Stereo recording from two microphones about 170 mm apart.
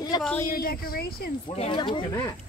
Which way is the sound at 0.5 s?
60° left (ahead or behind).